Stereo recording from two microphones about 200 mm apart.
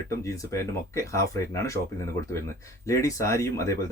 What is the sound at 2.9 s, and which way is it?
Speech, 15° left (ahead or behind).